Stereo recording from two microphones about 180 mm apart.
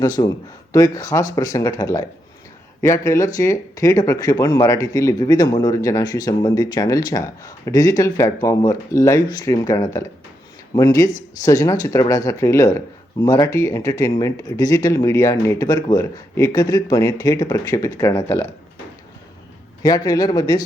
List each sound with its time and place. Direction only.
0.0 s speech: 20° left (ahead or behind)
11.4 s speech: 20° left (ahead or behind)
19.8 s speech: 20° left (ahead or behind)